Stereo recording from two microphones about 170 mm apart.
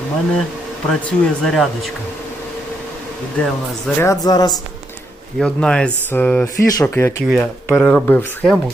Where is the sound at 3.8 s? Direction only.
15° left (ahead or behind).